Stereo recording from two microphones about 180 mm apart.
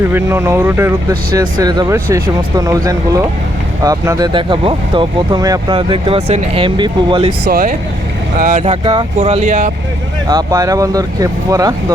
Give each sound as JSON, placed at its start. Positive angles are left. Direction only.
{"t": 0.1, "sound": "speech", "side_deg": -15}
{"t": 7.4, "sound": "speech", "side_deg": -55}
{"t": 8.6, "sound": "speech", "side_deg": -30}
{"t": 10.2, "sound": "speech", "side_deg": -20}